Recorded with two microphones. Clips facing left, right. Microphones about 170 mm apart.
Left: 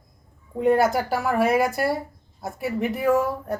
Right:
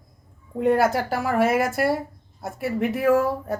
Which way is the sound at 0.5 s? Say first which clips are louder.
Even; centre (ahead or behind).